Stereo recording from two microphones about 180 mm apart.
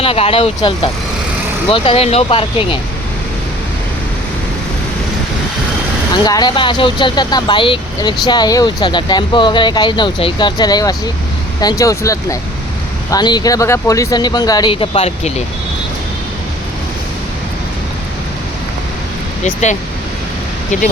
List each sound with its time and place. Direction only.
0.0 s speech: 30° left (ahead or behind)
6.2 s speech: 25° left (ahead or behind)